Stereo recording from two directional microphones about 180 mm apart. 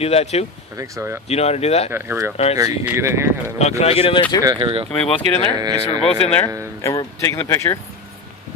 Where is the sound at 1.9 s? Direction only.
15° right (ahead or behind).